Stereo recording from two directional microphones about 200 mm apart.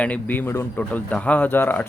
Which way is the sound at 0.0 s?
10° left (ahead or behind).